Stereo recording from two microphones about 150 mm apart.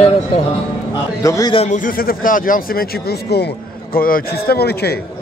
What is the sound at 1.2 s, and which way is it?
Speech, 25° left (ahead or behind).